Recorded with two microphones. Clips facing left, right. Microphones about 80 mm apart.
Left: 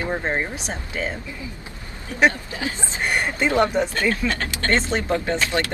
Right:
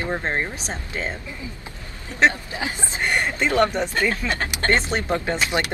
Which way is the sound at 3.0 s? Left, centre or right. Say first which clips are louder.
Even; centre.